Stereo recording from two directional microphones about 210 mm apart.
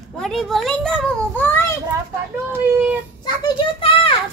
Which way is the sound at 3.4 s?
25° left (ahead or behind).